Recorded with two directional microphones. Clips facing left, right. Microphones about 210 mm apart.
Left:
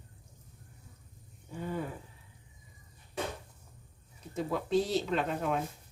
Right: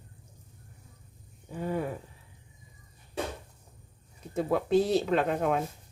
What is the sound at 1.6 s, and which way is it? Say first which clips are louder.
Speech: right 5 dB; 55° right (ahead or behind).